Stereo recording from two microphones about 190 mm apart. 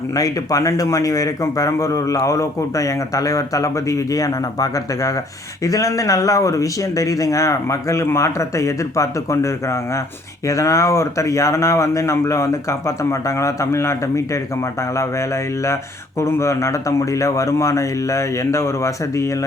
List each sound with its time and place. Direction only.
0.1 s speech: 20° left (ahead or behind)
15.6 s speech: 15° left (ahead or behind)